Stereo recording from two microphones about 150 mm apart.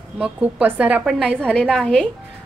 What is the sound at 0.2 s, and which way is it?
Speech, 10° right (ahead or behind).